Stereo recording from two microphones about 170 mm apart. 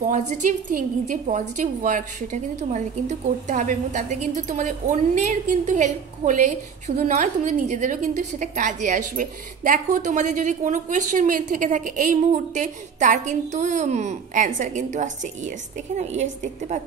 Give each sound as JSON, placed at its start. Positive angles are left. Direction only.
{"t": 0.0, "sound": "a woman's voice", "side_deg": -45}